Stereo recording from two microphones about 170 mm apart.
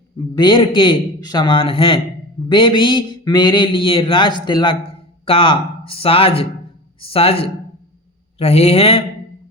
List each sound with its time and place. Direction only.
0.3 s speech: 25° left (ahead or behind)